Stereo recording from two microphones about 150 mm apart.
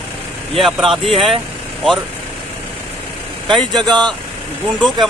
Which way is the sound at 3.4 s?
Centre (ahead or behind).